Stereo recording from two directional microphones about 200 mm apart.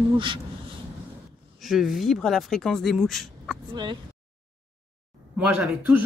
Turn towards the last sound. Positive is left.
turn(degrees=-5)  # may be behind; listen again after turning